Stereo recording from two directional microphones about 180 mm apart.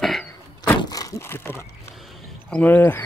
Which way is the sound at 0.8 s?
20° left (ahead or behind).